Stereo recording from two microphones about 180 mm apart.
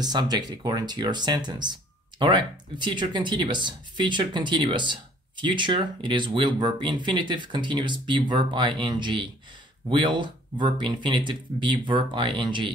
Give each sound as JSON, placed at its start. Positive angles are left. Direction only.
{"t": 0.0, "sound": "speech", "side_deg": -20}